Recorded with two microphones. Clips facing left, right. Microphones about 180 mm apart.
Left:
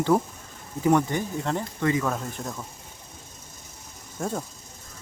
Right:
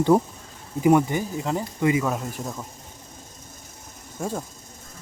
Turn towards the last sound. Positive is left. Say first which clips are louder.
# right 1 dB
turn(degrees=0)  # may be behind; listen again after turning